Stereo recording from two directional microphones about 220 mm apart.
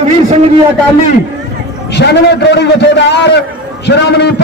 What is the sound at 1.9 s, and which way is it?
A man's voice, 50° left (ahead or behind).